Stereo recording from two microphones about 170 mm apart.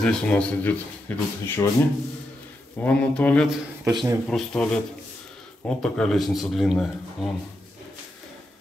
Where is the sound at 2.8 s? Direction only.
10° left (ahead or behind).